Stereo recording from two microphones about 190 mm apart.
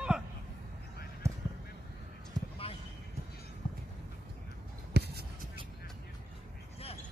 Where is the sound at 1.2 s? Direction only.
15° right (ahead or behind).